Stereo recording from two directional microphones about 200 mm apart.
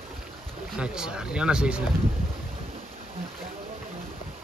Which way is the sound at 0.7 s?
5° right (ahead or behind).